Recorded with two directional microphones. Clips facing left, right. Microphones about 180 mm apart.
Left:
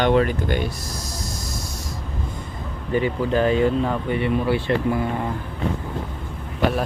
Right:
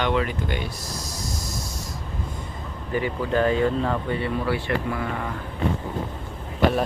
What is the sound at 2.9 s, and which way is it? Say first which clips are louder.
Speech: left 3 dB; 25° left (ahead or behind).